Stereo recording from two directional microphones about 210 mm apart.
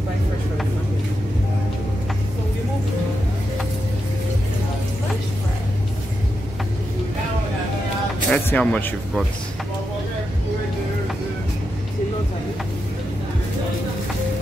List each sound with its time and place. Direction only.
8.3 s speech: 5° left (ahead or behind)